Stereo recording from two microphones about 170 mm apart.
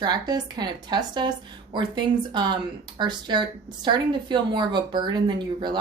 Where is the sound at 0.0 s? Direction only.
25° right (ahead or behind).